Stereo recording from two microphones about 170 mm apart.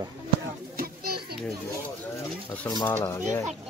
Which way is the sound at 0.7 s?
65° right (ahead or behind).